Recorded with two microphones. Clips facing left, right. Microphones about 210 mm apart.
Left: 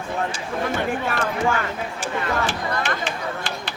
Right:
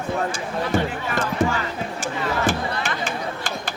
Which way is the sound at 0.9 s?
50° left (ahead or behind).